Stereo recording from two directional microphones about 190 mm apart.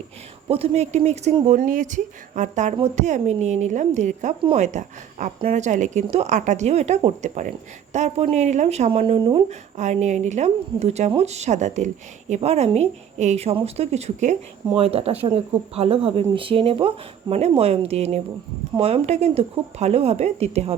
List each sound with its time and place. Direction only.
0.4 s speech: 30° right (ahead or behind)